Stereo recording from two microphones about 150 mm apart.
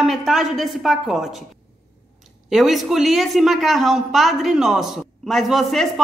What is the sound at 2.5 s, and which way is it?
A woman's voice, centre (ahead or behind).